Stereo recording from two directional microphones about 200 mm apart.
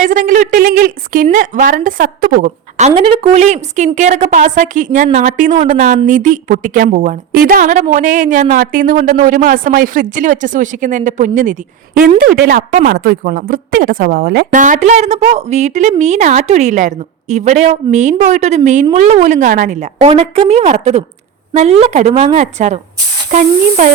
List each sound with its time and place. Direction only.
0.0 s speech: 40° right (ahead or behind)
5.5 s speech: 25° right (ahead or behind)